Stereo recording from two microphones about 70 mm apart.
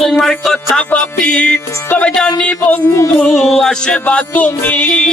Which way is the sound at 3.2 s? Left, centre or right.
Centre.